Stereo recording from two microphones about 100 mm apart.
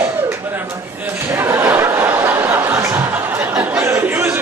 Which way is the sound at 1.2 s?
25° right (ahead or behind).